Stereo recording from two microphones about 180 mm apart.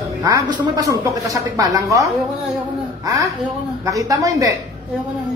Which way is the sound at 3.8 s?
20° right (ahead or behind).